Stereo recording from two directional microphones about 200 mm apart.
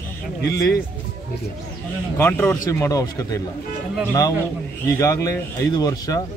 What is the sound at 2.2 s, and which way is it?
A man's voice, 10° left (ahead or behind).